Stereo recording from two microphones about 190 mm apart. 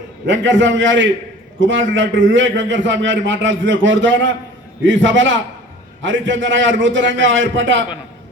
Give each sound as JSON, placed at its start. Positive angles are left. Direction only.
{"t": 0.3, "sound": "a man's voice", "side_deg": -75}